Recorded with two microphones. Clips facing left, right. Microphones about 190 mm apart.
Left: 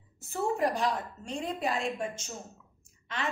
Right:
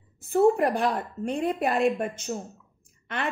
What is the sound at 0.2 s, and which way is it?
A woman's voice, 60° right (ahead or behind).